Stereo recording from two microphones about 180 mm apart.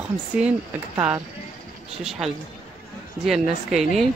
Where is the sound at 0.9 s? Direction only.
20° right (ahead or behind).